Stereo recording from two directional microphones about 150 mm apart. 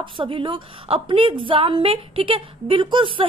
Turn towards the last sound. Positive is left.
turn(degrees=-35)  # may be behind; listen again after turning